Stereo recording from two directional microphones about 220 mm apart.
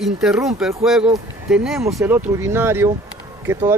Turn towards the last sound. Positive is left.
turn(degrees=-10)  # may be behind; listen again after turning